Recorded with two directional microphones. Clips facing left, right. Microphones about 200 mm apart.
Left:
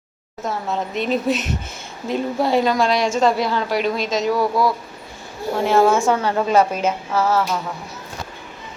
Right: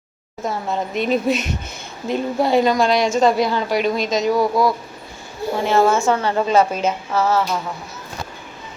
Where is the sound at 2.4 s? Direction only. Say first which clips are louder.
Right 2 dB; centre (ahead or behind).